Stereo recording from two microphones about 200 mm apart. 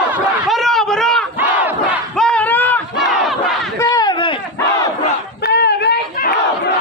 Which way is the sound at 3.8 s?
20° left (ahead or behind).